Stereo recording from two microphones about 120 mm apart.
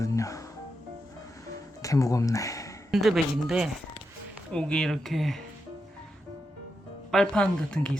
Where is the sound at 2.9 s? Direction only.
Centre (ahead or behind).